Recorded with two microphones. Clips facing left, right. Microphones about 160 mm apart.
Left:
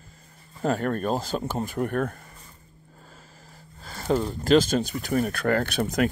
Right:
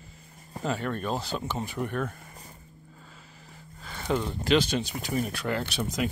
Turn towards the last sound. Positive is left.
turn(degrees=55)  # may be behind; listen again after turning